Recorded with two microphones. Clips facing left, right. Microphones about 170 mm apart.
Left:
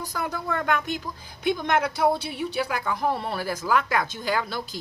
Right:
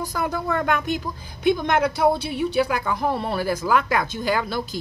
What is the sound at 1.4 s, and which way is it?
Speech, 20° right (ahead or behind).